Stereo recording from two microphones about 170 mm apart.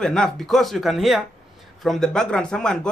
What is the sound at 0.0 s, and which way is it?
Speech, 5° left (ahead or behind).